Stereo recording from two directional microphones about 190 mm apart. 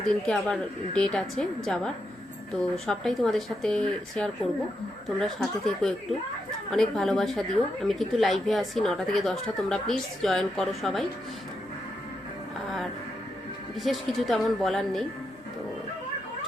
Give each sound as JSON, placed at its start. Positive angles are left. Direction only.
{"t": 0.0, "sound": "a woman's voice", "side_deg": 5}
{"t": 13.7, "sound": "a woman's voice", "side_deg": 0}